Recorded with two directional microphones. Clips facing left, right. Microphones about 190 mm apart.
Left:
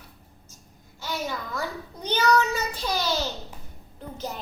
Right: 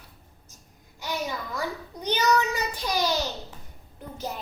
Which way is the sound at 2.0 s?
15° right (ahead or behind).